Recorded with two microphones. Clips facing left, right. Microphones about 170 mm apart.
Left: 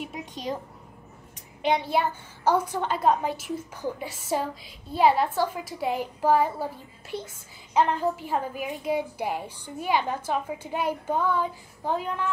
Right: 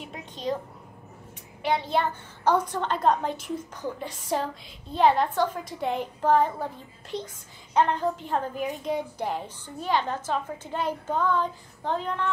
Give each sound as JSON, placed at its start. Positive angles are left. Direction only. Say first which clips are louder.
{"t": 1.6, "sound": "a woman's voice", "louder": "left 1 dB", "side_deg": 15}